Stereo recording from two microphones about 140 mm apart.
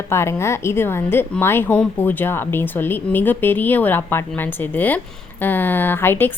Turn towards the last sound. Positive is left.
turn(degrees=15)  # may be behind; listen again after turning